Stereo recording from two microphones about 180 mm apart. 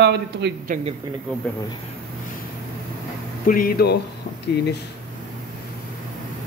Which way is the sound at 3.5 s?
50° left (ahead or behind).